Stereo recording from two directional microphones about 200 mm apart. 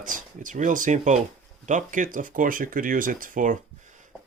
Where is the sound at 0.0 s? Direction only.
40° right (ahead or behind).